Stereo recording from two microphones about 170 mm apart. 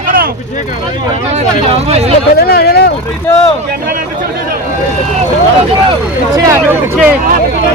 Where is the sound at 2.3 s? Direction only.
65° left (ahead or behind).